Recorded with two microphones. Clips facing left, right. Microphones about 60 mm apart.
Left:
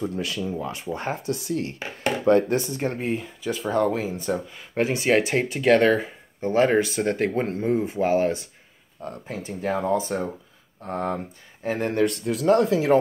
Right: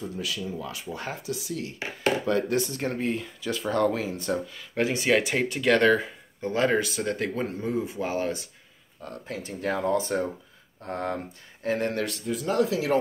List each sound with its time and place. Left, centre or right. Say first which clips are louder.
0.0 s speech: left 5 dB; left
0.6 s speech: left 5 dB; left
2.2 s speech: left 6 dB; left
9.5 s speech: left 2 dB; centre
11.6 s speech: left 1 dB; centre
12.3 s speech: left 4 dB; left
12.7 s speech: left 5 dB; left